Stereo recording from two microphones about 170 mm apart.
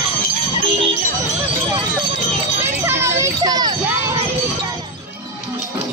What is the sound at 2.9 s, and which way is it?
Children playing, 15° right (ahead or behind).